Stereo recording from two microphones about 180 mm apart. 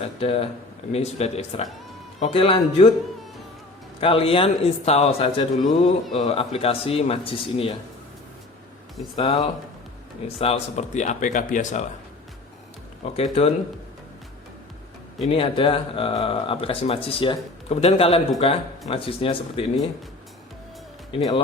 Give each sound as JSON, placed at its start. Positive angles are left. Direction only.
{"t": 0.2, "sound": "speech", "side_deg": 35}
{"t": 4.0, "sound": "speech", "side_deg": 30}
{"t": 9.1, "sound": "speech", "side_deg": 30}
{"t": 13.1, "sound": "speech", "side_deg": 35}
{"t": 15.2, "sound": "speech", "side_deg": 30}